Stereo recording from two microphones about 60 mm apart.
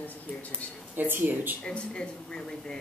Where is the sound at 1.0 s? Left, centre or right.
Right.